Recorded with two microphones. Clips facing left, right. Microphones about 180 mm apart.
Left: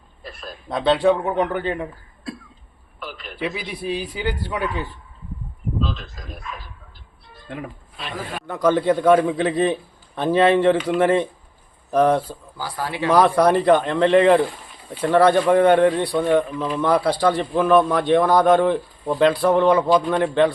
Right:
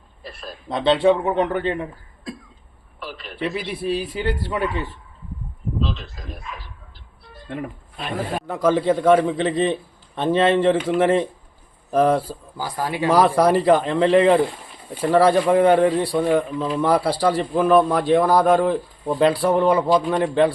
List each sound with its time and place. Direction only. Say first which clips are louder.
0.2 s a man's voice: even; centre (ahead or behind)
3.1 s a sound: right 1 dB; centre (ahead or behind)
3.8 s a man's voice: right 1 dB; centre (ahead or behind)
7.9 s speech: right 4 dB; 50° right (ahead or behind)
8.4 s a man's voice: left 1 dB; 5° right (ahead or behind)
12.5 s a man's voice: right 2 dB; 15° right (ahead or behind)